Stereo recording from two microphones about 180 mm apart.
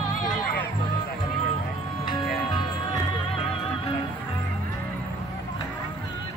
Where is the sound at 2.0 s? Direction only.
25° left (ahead or behind).